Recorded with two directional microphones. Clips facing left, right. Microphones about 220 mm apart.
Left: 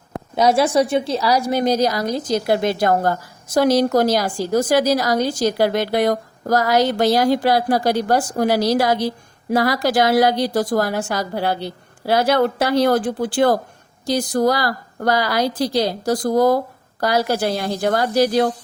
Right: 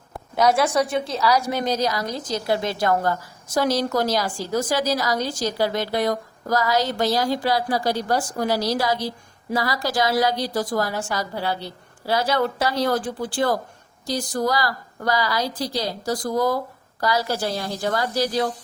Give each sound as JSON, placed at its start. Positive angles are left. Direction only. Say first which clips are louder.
{"t": 0.3, "sound": "a woman's voice", "louder": "left 3 dB", "side_deg": 25}
{"t": 1.8, "sound": "a woman's voice", "louder": "left 5 dB", "side_deg": 40}
{"t": 2.5, "sound": "a woman's voice", "louder": "left 4 dB", "side_deg": 60}
{"t": 2.8, "sound": "a woman's voice", "louder": "left 4 dB", "side_deg": 45}
{"t": 3.5, "sound": "a woman's voice", "louder": "left 6 dB", "side_deg": 60}